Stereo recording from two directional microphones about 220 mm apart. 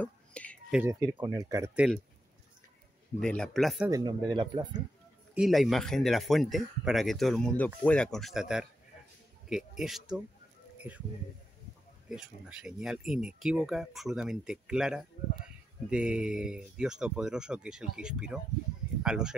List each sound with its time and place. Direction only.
0.0 s whispering: 5° left (ahead or behind)
0.7 s speech: 15° right (ahead or behind)
3.2 s speech: 5° left (ahead or behind)
4.3 s speech: 20° right (ahead or behind)
5.3 s speech: centre (ahead or behind)
12.1 s speech: 5° right (ahead or behind)